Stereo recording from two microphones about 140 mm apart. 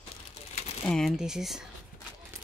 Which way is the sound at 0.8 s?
Centre (ahead or behind).